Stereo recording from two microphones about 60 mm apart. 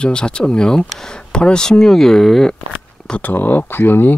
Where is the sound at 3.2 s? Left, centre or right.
Left.